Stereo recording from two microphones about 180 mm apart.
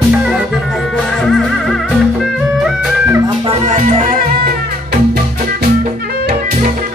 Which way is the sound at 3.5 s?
40° right (ahead or behind).